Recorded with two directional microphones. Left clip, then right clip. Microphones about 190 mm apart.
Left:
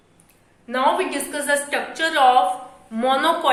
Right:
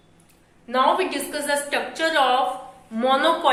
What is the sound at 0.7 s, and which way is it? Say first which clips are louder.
A woman's voice: even; 5° left (ahead or behind).